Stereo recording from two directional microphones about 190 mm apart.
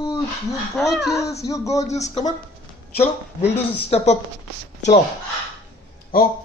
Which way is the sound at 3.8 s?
35° left (ahead or behind).